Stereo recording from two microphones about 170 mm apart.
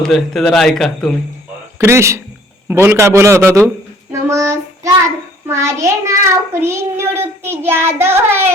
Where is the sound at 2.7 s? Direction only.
15° right (ahead or behind).